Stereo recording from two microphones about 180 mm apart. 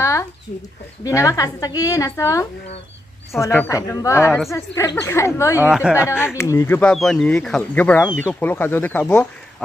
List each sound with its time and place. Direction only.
0.0 s a sound: 15° left (ahead or behind)
1.0 s a woman's voice: 20° left (ahead or behind)
5.6 s speech: 5° right (ahead or behind)
6.0 s speech: 15° left (ahead or behind)
6.8 s speech: 5° left (ahead or behind)